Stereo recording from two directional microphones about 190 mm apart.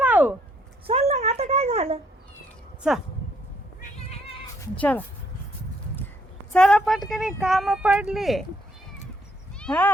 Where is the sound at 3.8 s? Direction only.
35° left (ahead or behind).